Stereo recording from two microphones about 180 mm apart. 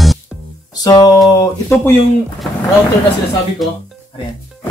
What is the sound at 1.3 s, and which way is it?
Speech, 15° left (ahead or behind).